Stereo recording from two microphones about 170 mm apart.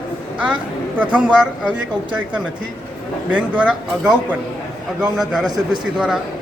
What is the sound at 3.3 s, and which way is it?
A woman's voice, 5° right (ahead or behind).